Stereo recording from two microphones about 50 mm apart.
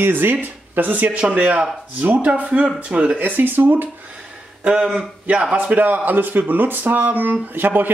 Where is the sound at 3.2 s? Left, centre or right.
Right.